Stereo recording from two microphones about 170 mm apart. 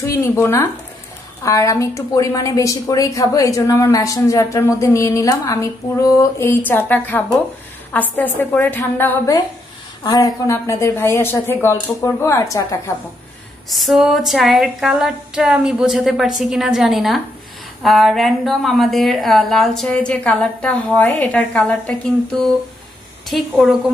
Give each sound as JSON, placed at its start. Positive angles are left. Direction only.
{"t": 0.0, "sound": "a woman's voice", "side_deg": 15}
{"t": 13.7, "sound": "a woman's voice", "side_deg": 0}
{"t": 23.6, "sound": "a woman's voice", "side_deg": -5}